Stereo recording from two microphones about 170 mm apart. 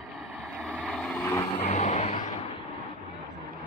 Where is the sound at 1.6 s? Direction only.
40° left (ahead or behind).